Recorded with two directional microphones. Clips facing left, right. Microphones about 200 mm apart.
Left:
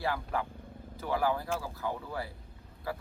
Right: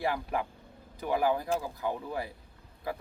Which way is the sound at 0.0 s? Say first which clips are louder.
Right 2 dB; 15° right (ahead or behind).